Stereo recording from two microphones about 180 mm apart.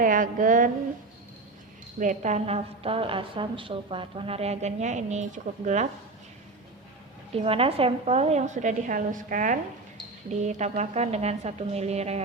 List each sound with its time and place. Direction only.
0.0 s speech: 50° right (ahead or behind)
2.0 s a woman's voice: 45° right (ahead or behind)
7.3 s a woman's voice: 30° right (ahead or behind)